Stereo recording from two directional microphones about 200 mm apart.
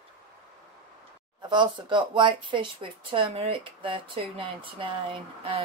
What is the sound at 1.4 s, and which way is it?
Speech, 20° right (ahead or behind).